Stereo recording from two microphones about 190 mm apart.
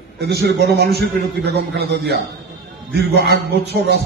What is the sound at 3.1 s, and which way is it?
Speech, 60° right (ahead or behind).